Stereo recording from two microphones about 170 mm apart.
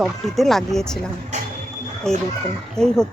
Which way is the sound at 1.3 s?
45° right (ahead or behind).